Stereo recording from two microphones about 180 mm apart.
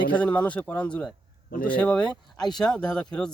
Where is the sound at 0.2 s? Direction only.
5° left (ahead or behind).